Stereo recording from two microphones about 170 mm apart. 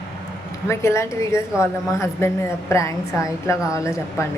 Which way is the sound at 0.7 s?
15° left (ahead or behind).